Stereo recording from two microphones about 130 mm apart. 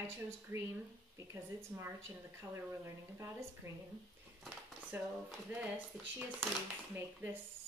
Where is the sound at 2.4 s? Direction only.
20° right (ahead or behind).